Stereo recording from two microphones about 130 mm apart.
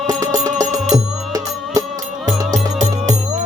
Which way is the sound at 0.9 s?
30° right (ahead or behind).